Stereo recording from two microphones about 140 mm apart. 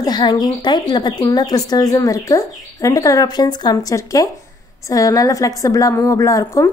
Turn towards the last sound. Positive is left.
turn(degrees=25)  # may be behind; listen again after turning